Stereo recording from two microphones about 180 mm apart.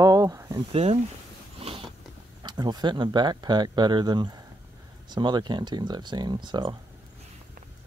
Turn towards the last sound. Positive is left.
turn(degrees=-25)  # may be behind; listen again after turning